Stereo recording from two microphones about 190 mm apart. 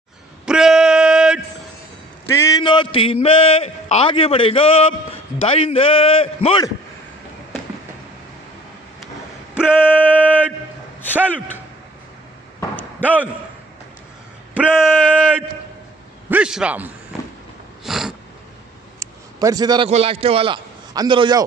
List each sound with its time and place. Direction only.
0.5 s male singing: 5° right (ahead or behind)
2.3 s a man's voice: 20° left (ahead or behind)
9.6 s male singing: 5° right (ahead or behind)
13.0 s speech: 10° right (ahead or behind)
14.5 s speech: 5° right (ahead or behind)
17.8 s a sound: centre (ahead or behind)
18.9 s a sound: 20° right (ahead or behind)
19.9 s a man's voice: 30° right (ahead or behind)